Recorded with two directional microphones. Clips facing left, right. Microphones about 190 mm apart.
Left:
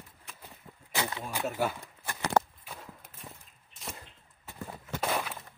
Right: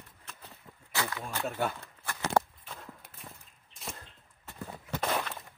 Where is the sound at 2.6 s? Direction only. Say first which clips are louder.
Even; 10° left (ahead or behind).